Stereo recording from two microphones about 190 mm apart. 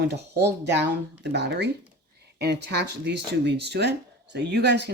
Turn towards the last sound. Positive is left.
turn(degrees=-60)  # may be behind; listen again after turning